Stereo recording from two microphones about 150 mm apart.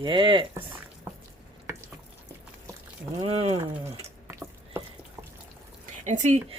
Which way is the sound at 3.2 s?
40° right (ahead or behind).